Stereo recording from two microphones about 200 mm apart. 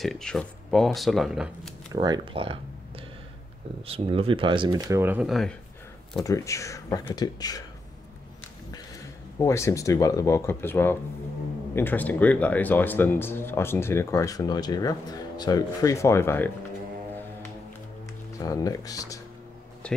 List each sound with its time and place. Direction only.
0.0 s speech: centre (ahead or behind)
1.9 s speech: 20° right (ahead or behind)
3.8 s speech: 30° right (ahead or behind); by 5.5 s centre (ahead or behind)
6.2 s speech: 15° left (ahead or behind)
9.4 s speech: 15° left (ahead or behind)
18.4 s speech: 15° left (ahead or behind)